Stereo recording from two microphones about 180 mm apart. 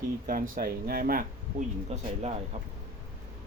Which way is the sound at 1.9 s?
35° right (ahead or behind).